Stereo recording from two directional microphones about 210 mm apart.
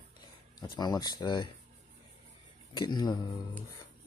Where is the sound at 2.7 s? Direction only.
20° left (ahead or behind).